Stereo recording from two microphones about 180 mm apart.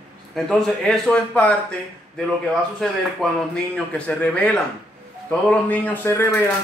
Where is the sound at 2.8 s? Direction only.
5° left (ahead or behind).